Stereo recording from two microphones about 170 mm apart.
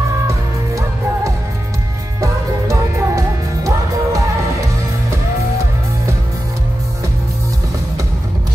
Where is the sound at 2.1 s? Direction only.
20° right (ahead or behind).